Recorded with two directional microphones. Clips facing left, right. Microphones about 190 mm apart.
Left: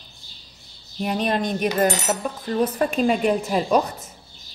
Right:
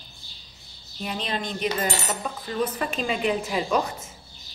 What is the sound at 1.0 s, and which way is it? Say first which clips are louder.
Cutlery: left 7 dB; 50° left (ahead or behind).